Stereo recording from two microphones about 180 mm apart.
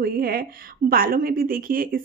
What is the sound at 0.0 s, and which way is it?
A woman's voice, 55° right (ahead or behind).